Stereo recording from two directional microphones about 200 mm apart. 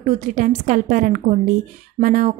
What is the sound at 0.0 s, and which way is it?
A woman's voice, 40° right (ahead or behind).